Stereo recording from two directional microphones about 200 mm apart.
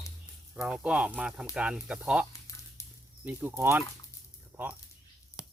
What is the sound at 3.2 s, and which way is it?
Speech, 10° right (ahead or behind).